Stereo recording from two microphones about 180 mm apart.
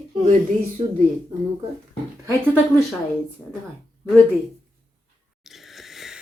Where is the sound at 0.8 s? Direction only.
30° right (ahead or behind).